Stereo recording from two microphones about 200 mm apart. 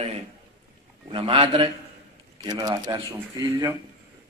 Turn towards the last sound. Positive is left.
turn(degrees=-20)  # may be behind; listen again after turning